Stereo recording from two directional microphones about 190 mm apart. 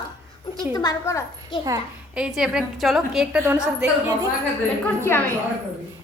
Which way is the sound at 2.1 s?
5° right (ahead or behind).